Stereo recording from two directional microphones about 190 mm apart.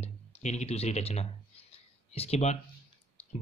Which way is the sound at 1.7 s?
30° left (ahead or behind).